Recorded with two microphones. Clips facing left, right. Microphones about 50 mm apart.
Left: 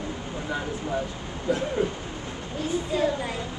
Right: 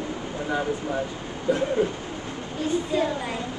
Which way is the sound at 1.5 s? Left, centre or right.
Centre.